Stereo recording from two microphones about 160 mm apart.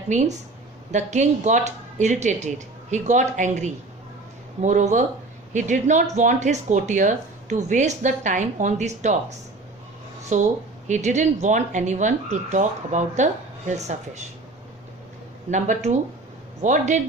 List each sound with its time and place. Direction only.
0.1 s speech: 45° right (ahead or behind)
10.3 s speech: 50° right (ahead or behind)
15.4 s speech: 50° right (ahead or behind)